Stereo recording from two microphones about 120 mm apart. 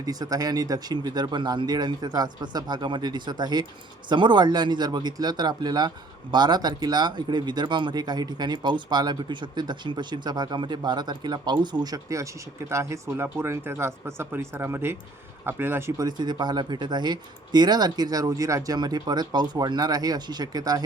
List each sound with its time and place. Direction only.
0.0 s speech: 30° right (ahead or behind)
16.0 s speech: 35° right (ahead or behind)